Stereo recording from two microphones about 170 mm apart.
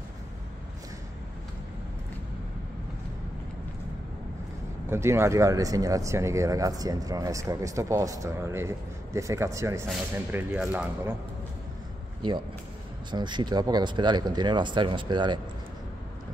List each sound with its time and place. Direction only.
4.8 s speech: 15° right (ahead or behind)
13.1 s speech: 25° right (ahead or behind)